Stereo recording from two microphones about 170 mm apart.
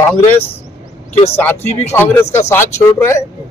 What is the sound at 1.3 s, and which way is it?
Speech, 15° left (ahead or behind).